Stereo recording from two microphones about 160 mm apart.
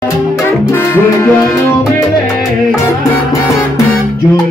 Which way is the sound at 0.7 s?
15° left (ahead or behind).